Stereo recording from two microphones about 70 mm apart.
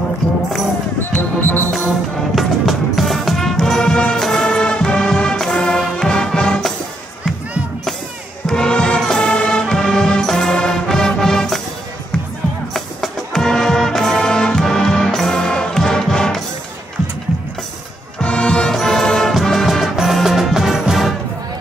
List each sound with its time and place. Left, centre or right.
1.4 s music: left
2.3 s music: centre
8.5 s music: centre
12.7 s music: centre
18.2 s music: centre